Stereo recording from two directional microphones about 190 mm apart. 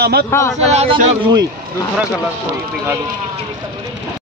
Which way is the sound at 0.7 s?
30° right (ahead or behind).